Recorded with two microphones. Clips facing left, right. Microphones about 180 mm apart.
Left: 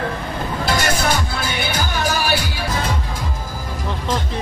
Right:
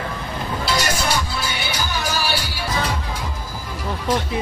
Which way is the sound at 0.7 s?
50° left (ahead or behind).